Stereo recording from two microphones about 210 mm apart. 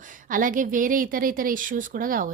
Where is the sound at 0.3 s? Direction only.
40° right (ahead or behind).